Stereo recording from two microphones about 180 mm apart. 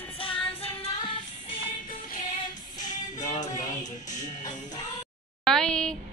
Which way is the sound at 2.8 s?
45° left (ahead or behind).